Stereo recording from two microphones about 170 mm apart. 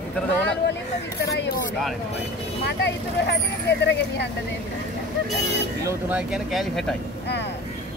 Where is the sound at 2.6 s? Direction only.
90° left.